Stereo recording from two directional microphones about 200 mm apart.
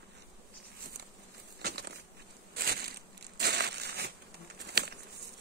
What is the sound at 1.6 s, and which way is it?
Crushing, 55° right (ahead or behind).